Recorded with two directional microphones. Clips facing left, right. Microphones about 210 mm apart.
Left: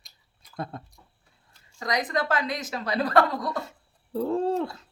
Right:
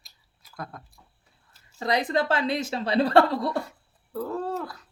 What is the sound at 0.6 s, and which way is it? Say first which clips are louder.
Speech: left 4 dB; 25° left (ahead or behind).